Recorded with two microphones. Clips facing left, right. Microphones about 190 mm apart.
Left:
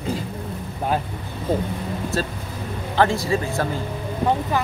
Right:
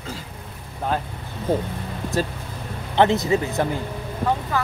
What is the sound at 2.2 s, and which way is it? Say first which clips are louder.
Speech: right 1 dB; 15° right (ahead or behind).